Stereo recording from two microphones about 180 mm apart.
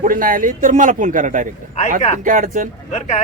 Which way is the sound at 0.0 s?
50° right (ahead or behind).